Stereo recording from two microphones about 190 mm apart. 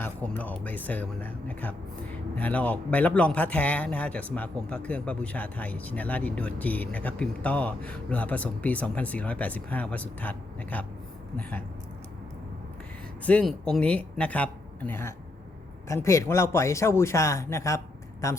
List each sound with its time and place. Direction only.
0.0 s speech: 10° left (ahead or behind)
13.2 s speech: 5° left (ahead or behind)